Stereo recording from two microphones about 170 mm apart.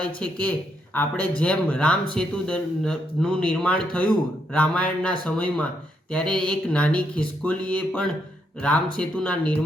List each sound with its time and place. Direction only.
0.0 s speech: 5° left (ahead or behind)